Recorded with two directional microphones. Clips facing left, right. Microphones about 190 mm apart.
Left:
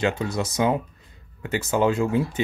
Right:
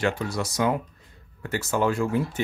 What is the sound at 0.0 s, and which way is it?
Speech, 20° left (ahead or behind).